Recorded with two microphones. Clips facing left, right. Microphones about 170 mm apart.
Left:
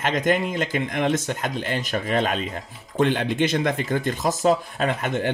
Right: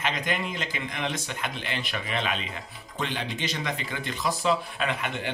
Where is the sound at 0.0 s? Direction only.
45° left (ahead or behind).